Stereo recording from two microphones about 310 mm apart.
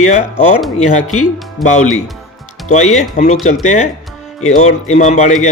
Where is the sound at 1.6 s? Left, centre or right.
Centre.